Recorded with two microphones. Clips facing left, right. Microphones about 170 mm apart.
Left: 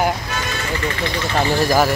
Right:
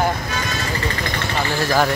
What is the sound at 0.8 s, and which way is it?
Speech, 45° right (ahead or behind).